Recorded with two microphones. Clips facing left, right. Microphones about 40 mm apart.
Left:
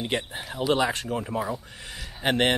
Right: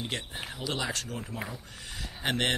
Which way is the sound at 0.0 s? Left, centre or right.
Left.